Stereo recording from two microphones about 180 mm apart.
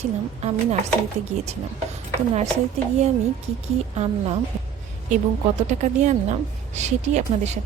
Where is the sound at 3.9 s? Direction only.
35° right (ahead or behind).